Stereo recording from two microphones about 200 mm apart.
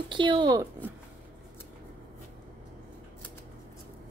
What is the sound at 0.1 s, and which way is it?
Speech, 25° right (ahead or behind).